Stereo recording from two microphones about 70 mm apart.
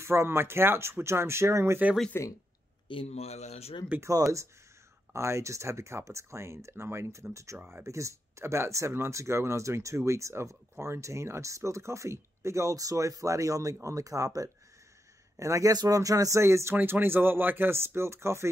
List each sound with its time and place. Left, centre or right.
0.0 s speech: right
2.1 s speech: left
3.9 s speech: right
5.1 s speech: right
16.3 s speech: right